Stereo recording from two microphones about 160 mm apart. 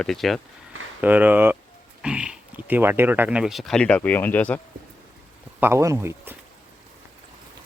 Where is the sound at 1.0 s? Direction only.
10° right (ahead or behind); by 4.6 s 10° left (ahead or behind).